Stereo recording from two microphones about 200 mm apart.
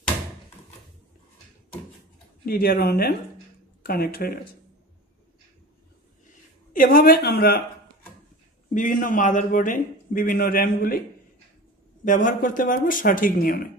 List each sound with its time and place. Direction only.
2.4 s a man's voice: 50° left (ahead or behind)
6.7 s a man's voice: 45° left (ahead or behind)
8.7 s a man's voice: 40° left (ahead or behind)